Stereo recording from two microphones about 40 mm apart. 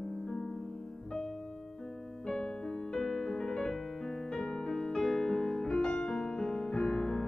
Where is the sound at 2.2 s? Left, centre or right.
Centre.